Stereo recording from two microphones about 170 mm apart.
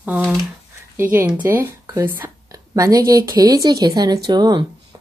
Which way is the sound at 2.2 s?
20° right (ahead or behind).